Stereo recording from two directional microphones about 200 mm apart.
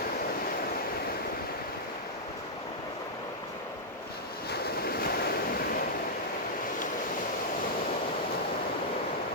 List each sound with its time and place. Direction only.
4.5 s waves: 50° left (ahead or behind)